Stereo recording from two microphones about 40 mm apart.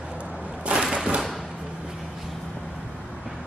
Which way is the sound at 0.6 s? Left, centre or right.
Right.